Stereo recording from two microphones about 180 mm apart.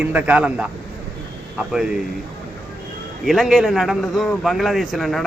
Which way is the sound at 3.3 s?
Centre (ahead or behind).